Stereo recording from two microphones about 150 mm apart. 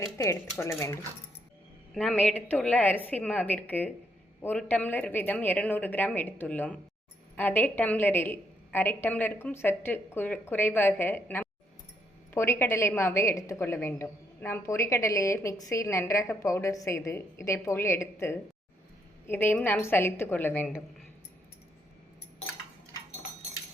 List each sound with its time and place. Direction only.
0.0 s a woman's voice: 20° left (ahead or behind)
1.9 s a woman's voice: 5° left (ahead or behind)